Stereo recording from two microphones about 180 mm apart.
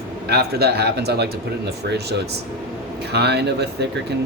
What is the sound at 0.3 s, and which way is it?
Speech, 65° right (ahead or behind).